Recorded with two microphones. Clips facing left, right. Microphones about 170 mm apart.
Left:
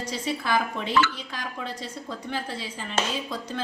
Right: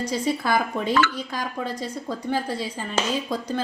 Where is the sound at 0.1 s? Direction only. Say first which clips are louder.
Right 2 dB; 40° right (ahead or behind).